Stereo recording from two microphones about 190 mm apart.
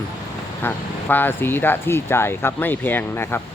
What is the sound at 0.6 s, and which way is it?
Speech, 10° left (ahead or behind).